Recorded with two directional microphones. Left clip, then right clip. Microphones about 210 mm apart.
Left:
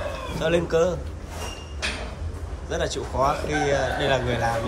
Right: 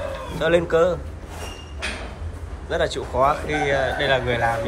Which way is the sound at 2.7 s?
10° left (ahead or behind).